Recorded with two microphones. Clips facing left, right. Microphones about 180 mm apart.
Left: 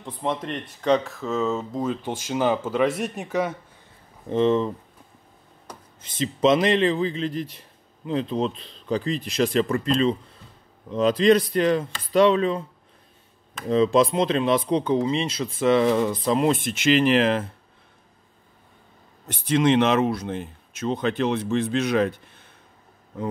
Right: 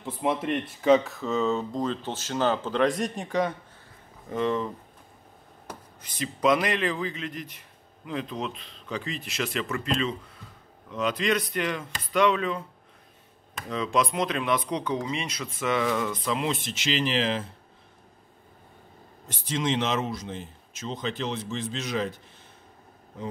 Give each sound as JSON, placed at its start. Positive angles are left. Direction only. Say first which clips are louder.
{"t": 0.0, "sound": "speech", "louder": "right 1 dB", "side_deg": -5}
{"t": 4.3, "sound": "speech", "louder": "left 7 dB", "side_deg": 25}
{"t": 5.9, "sound": "a man's voice", "louder": "left 7 dB", "side_deg": 25}
{"t": 13.7, "sound": "a man's voice", "louder": "left 8 dB", "side_deg": 30}
{"t": 19.2, "sound": "speech", "louder": "left 8 dB", "side_deg": 65}